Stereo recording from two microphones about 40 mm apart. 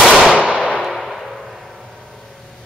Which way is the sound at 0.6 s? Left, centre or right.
Centre.